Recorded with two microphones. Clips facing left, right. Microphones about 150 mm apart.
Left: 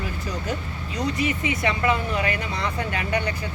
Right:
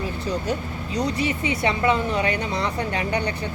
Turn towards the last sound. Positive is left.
turn(degrees=-30)  # may be behind; listen again after turning